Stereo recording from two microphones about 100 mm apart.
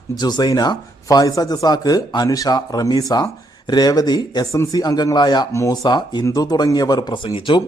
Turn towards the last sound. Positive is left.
turn(degrees=55)  # may be behind; listen again after turning